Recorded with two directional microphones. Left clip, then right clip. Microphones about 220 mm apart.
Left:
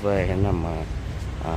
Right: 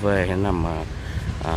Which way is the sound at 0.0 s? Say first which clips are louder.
Right 2 dB; 10° right (ahead or behind).